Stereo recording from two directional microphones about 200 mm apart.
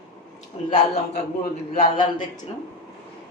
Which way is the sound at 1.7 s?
45° left (ahead or behind).